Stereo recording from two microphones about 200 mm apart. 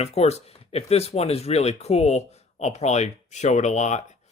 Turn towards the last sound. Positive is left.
turn(degrees=35)  # may be behind; listen again after turning